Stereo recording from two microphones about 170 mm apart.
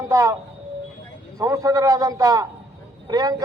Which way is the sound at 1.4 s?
20° right (ahead or behind).